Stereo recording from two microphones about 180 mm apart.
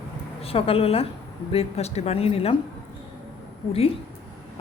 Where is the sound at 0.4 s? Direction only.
30° left (ahead or behind).